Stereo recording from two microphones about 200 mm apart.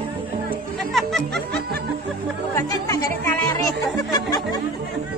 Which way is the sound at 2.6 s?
15° left (ahead or behind).